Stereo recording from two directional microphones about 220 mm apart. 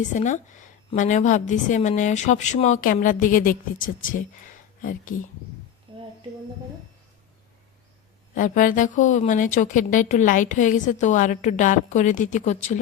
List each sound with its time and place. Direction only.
0.1 s a woman's voice: 35° left (ahead or behind)
5.9 s a sound: 25° right (ahead or behind)
8.4 s a woman's voice: 35° left (ahead or behind)